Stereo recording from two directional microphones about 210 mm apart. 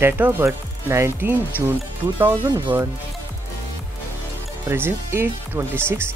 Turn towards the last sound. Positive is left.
turn(degrees=-10)  # may be behind; listen again after turning